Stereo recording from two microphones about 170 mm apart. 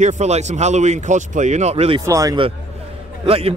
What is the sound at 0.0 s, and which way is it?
A man's voice, 40° right (ahead or behind).